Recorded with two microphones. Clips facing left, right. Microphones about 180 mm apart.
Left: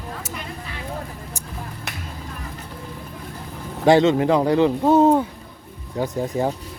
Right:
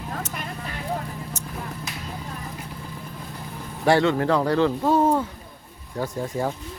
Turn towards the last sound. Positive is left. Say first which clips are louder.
# left 4 dB
turn(degrees=20)  # may be behind; listen again after turning